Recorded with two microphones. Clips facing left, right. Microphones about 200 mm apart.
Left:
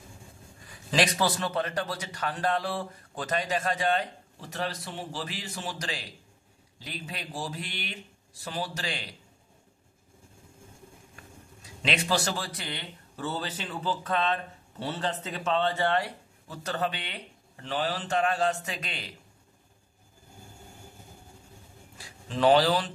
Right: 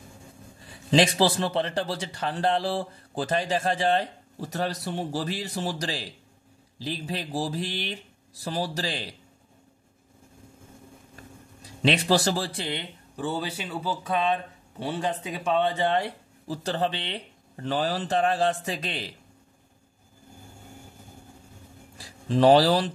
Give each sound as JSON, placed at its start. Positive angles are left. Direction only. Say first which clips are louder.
{"t": 0.6, "sound": "a man's voice", "louder": "right 5 dB", "side_deg": -25}
{"t": 11.6, "sound": "a man's voice", "louder": "right 6 dB", "side_deg": -35}
{"t": 13.1, "sound": "speech", "louder": "right 4 dB", "side_deg": -15}
{"t": 17.6, "sound": "a man's voice", "louder": "right 4 dB", "side_deg": -40}
{"t": 21.9, "sound": "speech", "louder": "right 9 dB", "side_deg": -35}